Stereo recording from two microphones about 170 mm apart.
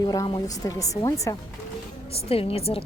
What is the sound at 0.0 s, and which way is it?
Speech, 20° left (ahead or behind).